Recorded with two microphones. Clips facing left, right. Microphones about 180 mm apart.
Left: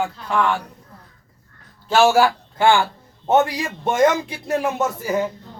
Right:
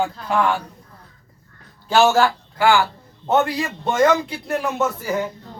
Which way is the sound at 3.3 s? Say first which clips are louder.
Left 1 dB; 15° left (ahead or behind).